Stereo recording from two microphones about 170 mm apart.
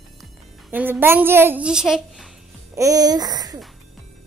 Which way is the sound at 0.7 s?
10° right (ahead or behind).